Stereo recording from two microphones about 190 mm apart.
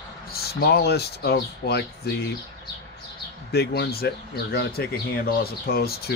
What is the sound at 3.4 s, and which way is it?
Speech, 55° left (ahead or behind).